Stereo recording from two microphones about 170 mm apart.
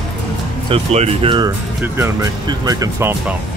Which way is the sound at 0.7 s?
35° right (ahead or behind).